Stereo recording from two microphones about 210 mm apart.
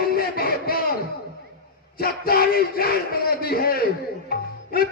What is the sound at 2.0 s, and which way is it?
A man's voice, 45° left (ahead or behind).